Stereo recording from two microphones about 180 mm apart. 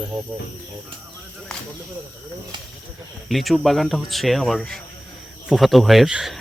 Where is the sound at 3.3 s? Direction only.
Centre (ahead or behind).